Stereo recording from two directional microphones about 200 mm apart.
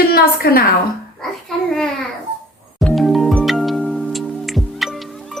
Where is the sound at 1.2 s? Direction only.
5° left (ahead or behind).